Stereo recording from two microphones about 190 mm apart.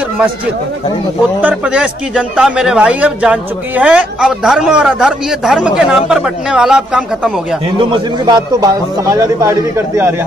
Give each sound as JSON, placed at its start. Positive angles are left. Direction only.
{"t": 1.5, "sound": "a man's voice", "side_deg": -5}
{"t": 7.9, "sound": "speech", "side_deg": -20}